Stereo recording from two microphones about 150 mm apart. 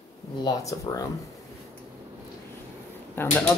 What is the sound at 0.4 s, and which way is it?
Speech, 25° left (ahead or behind).